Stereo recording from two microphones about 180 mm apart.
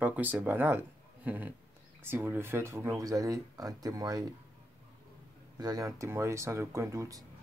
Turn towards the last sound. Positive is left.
turn(degrees=-20)  # may be behind; listen again after turning